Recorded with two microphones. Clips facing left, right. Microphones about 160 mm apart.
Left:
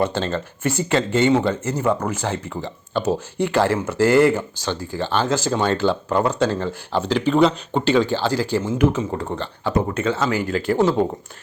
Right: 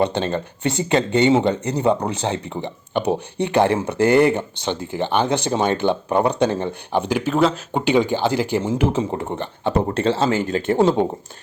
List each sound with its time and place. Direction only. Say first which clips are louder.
0.0 s speech: right 1 dB; 20° right (ahead or behind)
8.6 s speech: left 1 dB; 30° right (ahead or behind)